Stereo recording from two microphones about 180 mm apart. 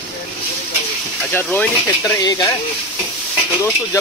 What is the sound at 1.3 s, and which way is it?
Speech, 10° left (ahead or behind).